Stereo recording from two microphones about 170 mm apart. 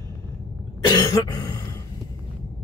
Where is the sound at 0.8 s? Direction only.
25° left (ahead or behind).